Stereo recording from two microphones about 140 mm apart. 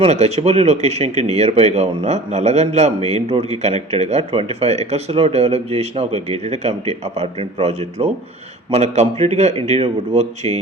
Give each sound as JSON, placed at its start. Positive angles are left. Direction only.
{"t": 0.0, "sound": "a man's voice", "side_deg": -50}